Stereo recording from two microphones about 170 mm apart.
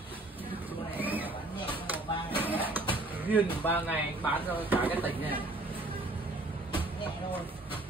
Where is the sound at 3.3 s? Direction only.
10° left (ahead or behind).